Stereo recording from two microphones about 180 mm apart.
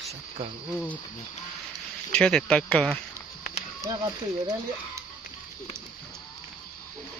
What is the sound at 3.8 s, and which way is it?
Speech, 15° right (ahead or behind).